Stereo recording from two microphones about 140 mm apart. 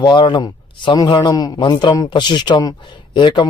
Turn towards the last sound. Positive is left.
turn(degrees=30)  # may be behind; listen again after turning